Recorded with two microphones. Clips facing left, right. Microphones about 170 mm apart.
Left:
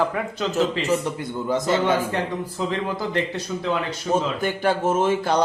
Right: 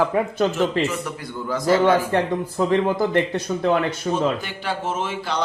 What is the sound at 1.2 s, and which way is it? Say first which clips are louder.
Speech: left 1 dB; 20° left (ahead or behind).